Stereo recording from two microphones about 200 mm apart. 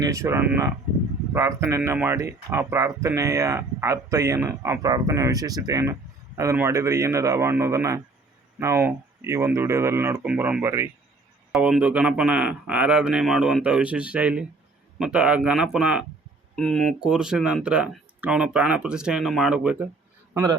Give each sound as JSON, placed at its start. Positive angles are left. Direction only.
{"t": 0.0, "sound": "speech", "side_deg": -15}
{"t": 20.3, "sound": "a man's voice", "side_deg": -20}